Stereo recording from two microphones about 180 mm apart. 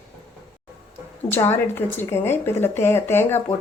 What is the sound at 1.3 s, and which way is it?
Speech, 10° left (ahead or behind).